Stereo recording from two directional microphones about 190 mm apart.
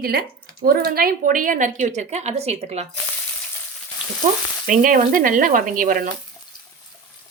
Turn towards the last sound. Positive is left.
turn(degrees=-45)  # may be behind; listen again after turning